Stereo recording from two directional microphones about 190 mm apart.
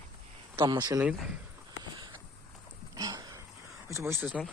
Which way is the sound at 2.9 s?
20° right (ahead or behind).